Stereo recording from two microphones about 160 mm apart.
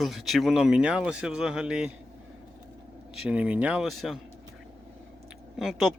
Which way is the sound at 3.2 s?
10° right (ahead or behind).